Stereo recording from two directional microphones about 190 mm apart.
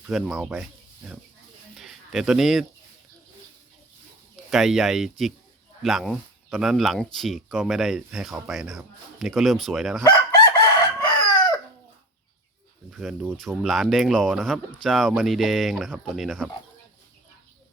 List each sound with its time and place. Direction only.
0.1 s speech: centre (ahead or behind)
1.7 s a sound: centre (ahead or behind)
4.5 s speech: centre (ahead or behind)
10.6 s chicken: 20° left (ahead or behind)
12.9 s speech: centre (ahead or behind)